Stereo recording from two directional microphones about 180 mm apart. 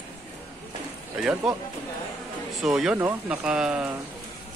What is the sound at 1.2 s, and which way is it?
Speech, 5° right (ahead or behind).